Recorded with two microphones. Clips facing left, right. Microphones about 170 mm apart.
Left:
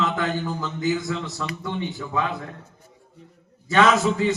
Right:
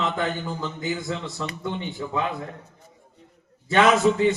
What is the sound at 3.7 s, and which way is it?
Speech, 30° right (ahead or behind).